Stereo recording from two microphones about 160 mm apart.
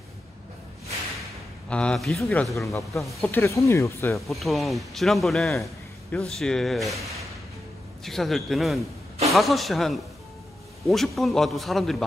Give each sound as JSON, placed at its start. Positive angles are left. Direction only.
{"t": 1.7, "sound": "speech", "side_deg": 5}
{"t": 4.3, "sound": "speech", "side_deg": 0}